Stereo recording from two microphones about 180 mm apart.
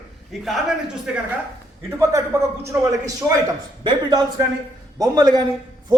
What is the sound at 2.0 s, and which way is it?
Speech, 15° right (ahead or behind).